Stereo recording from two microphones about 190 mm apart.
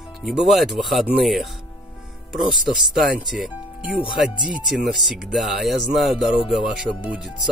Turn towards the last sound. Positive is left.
turn(degrees=-5)  # may be behind; listen again after turning